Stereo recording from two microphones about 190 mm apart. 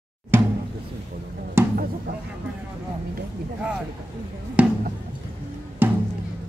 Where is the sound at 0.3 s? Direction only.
10° right (ahead or behind).